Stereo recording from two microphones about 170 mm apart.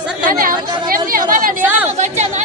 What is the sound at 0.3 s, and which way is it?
Chatter, 55° right (ahead or behind).